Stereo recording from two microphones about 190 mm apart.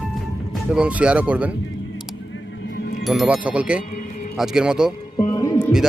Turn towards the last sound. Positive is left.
turn(degrees=15)  # may be behind; listen again after turning